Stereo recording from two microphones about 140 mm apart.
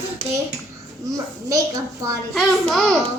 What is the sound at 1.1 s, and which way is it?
Speech, 25° right (ahead or behind).